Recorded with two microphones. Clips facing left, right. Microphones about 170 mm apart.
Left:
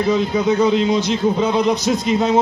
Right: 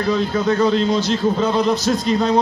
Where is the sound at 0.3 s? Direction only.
15° left (ahead or behind).